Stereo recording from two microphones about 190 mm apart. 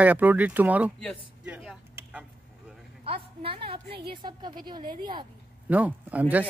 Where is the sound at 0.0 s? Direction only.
10° right (ahead or behind).